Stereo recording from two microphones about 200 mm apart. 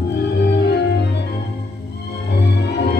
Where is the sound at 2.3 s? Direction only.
55° left (ahead or behind).